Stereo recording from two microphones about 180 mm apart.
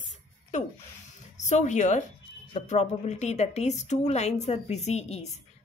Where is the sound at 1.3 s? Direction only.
40° left (ahead or behind).